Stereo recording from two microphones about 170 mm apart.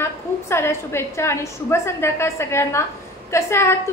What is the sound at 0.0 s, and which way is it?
A woman's voice, 15° left (ahead or behind).